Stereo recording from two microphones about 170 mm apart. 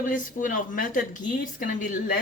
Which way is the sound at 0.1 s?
50° left (ahead or behind).